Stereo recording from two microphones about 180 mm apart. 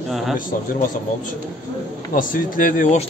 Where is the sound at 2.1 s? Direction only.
50° left (ahead or behind).